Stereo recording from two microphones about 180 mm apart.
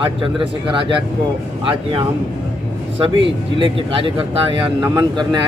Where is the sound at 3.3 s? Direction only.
30° right (ahead or behind).